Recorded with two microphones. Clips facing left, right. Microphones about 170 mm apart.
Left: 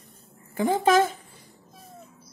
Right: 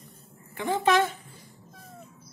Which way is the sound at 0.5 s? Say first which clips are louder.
Left 3 dB; 40° left (ahead or behind).